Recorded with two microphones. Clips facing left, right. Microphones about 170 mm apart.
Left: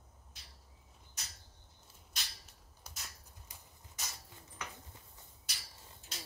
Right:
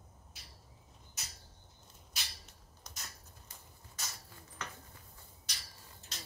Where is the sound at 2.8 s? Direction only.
10° left (ahead or behind).